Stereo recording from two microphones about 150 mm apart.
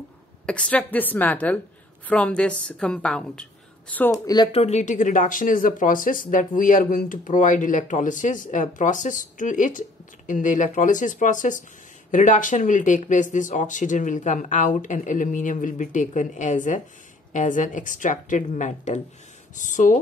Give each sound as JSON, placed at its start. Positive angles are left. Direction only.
{"t": 0.5, "sound": "a woman's voice", "side_deg": 10}
{"t": 4.1, "sound": "speech", "side_deg": 25}
{"t": 4.5, "sound": "speech", "side_deg": 45}